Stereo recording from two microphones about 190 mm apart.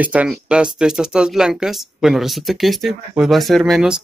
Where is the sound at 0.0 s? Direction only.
5° right (ahead or behind).